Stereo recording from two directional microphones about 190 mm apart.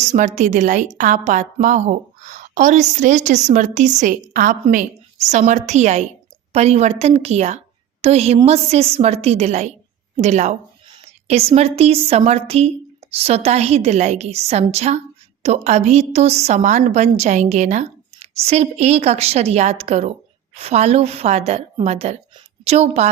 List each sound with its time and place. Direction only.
0.0 s a woman's voice: 40° right (ahead or behind)